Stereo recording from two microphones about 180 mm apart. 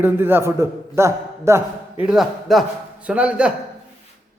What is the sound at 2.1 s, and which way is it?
A man's voice, centre (ahead or behind).